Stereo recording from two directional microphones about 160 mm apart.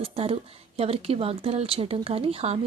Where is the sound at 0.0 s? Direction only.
40° right (ahead or behind).